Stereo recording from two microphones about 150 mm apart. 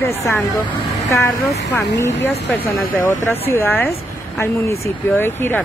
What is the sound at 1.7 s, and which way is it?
Speech, 15° left (ahead or behind).